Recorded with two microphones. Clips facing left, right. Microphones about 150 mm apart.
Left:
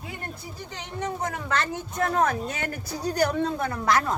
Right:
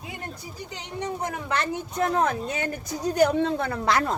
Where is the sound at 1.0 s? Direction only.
15° right (ahead or behind).